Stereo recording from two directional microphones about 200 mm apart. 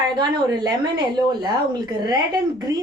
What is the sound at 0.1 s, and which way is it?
Speech, 20° right (ahead or behind).